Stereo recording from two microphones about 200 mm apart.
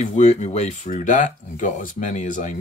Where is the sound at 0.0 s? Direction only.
35° left (ahead or behind).